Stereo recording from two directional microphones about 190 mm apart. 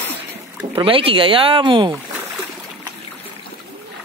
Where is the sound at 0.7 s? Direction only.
30° right (ahead or behind).